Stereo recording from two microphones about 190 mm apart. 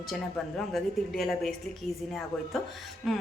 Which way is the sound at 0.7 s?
Centre (ahead or behind).